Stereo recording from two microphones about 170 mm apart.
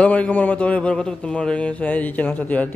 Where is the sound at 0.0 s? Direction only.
10° left (ahead or behind).